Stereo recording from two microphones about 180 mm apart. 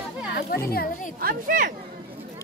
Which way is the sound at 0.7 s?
55° left (ahead or behind).